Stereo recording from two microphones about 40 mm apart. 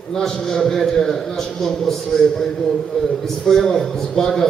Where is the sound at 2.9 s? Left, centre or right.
Centre.